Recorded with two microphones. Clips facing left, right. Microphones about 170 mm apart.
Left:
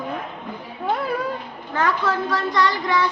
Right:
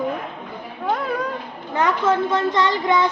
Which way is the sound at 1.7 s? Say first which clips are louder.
Right 3 dB; 20° right (ahead or behind).